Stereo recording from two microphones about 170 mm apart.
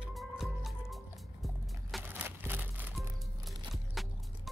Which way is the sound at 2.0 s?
10° right (ahead or behind).